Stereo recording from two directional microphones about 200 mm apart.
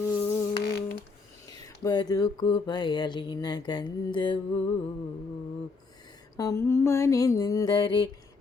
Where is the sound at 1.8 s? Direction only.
20° left (ahead or behind).